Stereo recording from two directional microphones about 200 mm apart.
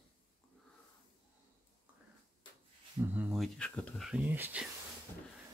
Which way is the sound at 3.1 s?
5° right (ahead or behind).